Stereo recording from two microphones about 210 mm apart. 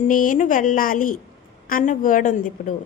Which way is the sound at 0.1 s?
40° left (ahead or behind).